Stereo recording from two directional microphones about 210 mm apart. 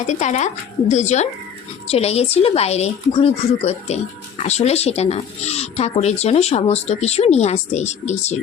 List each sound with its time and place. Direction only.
0.1 s speech: 35° left (ahead or behind)